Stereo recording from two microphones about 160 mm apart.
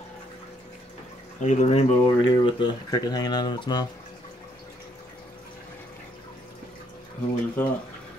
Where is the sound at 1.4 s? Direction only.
45° left (ahead or behind).